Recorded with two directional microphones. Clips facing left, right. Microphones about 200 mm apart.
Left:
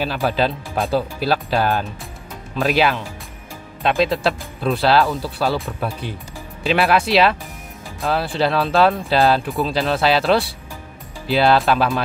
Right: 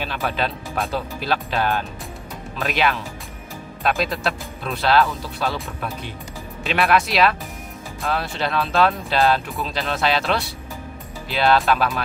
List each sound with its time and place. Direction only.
0.0 s speech: 35° left (ahead or behind)